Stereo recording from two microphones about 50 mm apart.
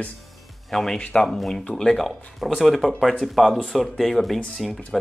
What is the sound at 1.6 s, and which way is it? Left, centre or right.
Speech, centre.